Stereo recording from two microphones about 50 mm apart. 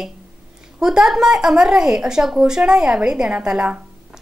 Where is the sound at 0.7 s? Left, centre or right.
Centre.